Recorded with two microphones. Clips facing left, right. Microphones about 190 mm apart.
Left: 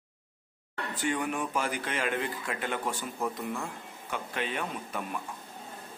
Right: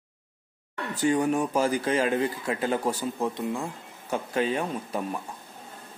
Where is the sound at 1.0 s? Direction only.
35° right (ahead or behind).